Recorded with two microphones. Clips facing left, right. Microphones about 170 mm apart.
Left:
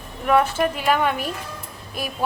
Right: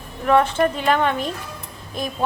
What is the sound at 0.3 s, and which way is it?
A woman's voice, 10° left (ahead or behind).